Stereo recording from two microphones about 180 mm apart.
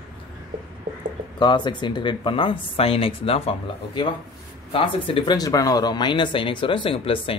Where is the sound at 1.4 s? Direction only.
25° left (ahead or behind).